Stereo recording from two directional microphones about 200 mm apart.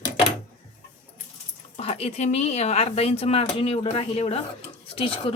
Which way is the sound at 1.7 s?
30° left (ahead or behind).